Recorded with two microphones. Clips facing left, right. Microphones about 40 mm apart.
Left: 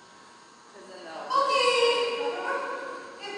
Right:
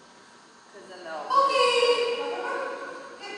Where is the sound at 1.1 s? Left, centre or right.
Centre.